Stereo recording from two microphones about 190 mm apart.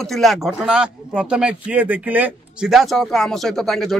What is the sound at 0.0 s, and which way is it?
Speech, centre (ahead or behind).